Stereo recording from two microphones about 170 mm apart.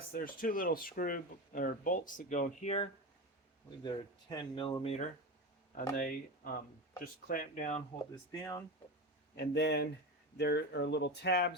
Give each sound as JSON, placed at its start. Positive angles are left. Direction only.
{"t": 0.1, "sound": "speech", "side_deg": 55}
{"t": 3.8, "sound": "speech", "side_deg": 25}
{"t": 6.0, "sound": "speech", "side_deg": 55}
{"t": 8.1, "sound": "speech", "side_deg": 20}
{"t": 9.3, "sound": "speech", "side_deg": 75}